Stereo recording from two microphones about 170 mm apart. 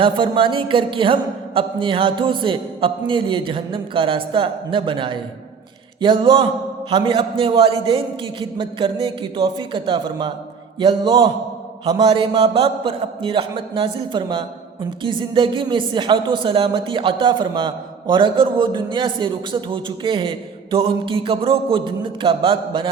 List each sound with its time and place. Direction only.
0.0 s a man's voice: 30° right (ahead or behind)